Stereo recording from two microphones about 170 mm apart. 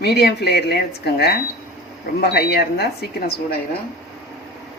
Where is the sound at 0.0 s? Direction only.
70° left (ahead or behind).